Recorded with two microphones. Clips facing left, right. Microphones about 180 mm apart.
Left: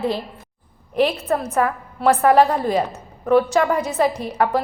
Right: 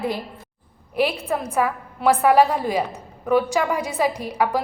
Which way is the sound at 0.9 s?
10° right (ahead or behind).